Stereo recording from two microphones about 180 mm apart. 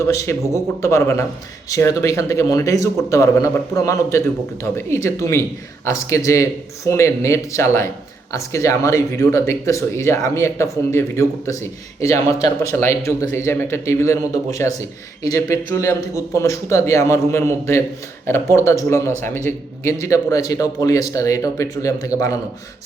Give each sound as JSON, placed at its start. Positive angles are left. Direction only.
{"t": 0.0, "sound": "speech", "side_deg": 15}